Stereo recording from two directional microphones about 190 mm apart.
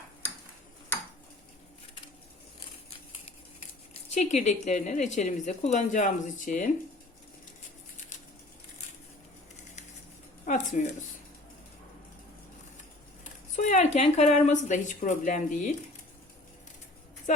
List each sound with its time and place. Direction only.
4.1 s speech: 35° left (ahead or behind)
10.4 s a sound: 40° left (ahead or behind)
13.6 s speech: 40° left (ahead or behind)